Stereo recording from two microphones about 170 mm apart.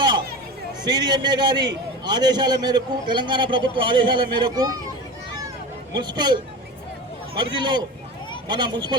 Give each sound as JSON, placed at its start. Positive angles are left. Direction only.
{"t": 0.9, "sound": "a man's voice", "side_deg": -25}
{"t": 6.0, "sound": "a man's voice", "side_deg": -25}